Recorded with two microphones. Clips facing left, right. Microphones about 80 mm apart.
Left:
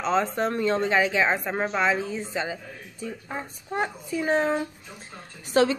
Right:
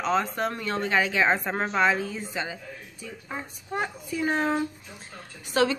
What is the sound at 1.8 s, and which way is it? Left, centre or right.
Speech, left.